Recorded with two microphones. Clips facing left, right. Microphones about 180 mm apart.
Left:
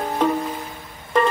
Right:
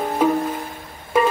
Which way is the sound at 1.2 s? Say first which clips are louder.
Right 1 dB; 5° right (ahead or behind).